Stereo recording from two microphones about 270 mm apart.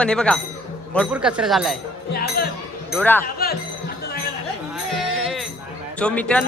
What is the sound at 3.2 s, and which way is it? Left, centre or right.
Speech, left.